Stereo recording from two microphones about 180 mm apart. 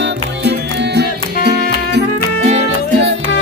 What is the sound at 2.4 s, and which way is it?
Music, 40° right (ahead or behind).